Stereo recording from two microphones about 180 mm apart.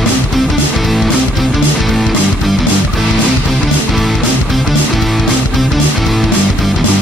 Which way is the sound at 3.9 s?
Centre (ahead or behind).